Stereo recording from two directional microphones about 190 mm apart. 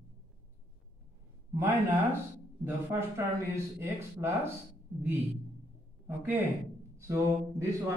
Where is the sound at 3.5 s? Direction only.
15° right (ahead or behind).